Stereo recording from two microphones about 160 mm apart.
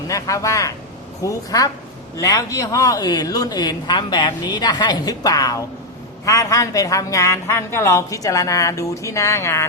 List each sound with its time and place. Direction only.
0.1 s a woman's voice: 20° left (ahead or behind)